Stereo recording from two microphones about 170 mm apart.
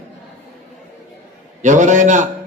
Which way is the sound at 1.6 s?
45° right (ahead or behind).